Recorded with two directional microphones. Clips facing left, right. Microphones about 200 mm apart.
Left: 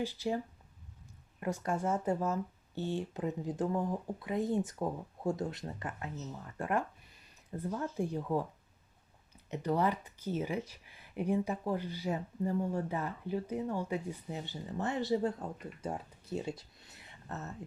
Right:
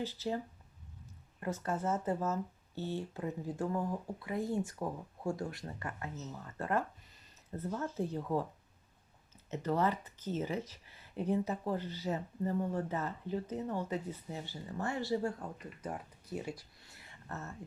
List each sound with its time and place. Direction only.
0.0 s speech: 10° left (ahead or behind)
1.4 s speech: 15° left (ahead or behind)
9.5 s speech: 15° left (ahead or behind)